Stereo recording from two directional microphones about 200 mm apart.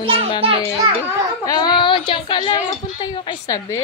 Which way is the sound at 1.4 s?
20° left (ahead or behind).